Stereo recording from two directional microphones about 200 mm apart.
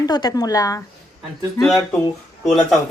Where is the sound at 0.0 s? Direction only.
20° left (ahead or behind).